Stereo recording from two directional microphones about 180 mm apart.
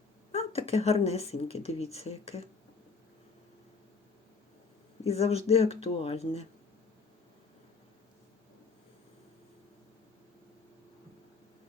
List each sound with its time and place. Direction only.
0.3 s speech: 35° left (ahead or behind)
5.0 s speech: 35° left (ahead or behind)